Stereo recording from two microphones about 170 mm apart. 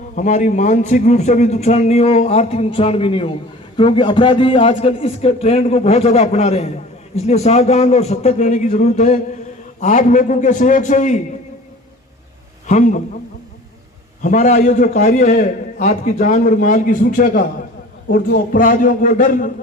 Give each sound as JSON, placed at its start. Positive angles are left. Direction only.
{"t": 0.2, "sound": "a man's voice", "side_deg": 45}
{"t": 12.6, "sound": "a man's voice", "side_deg": 45}
{"t": 14.2, "sound": "a man's voice", "side_deg": 45}
{"t": 18.5, "sound": "a man's voice", "side_deg": 55}